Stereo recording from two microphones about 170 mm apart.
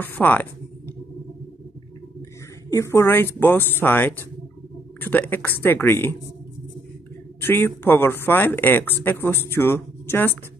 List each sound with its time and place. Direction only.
0.0 s a sound: 10° left (ahead or behind)
2.7 s speech: 15° left (ahead or behind)
7.3 s speech: 10° left (ahead or behind)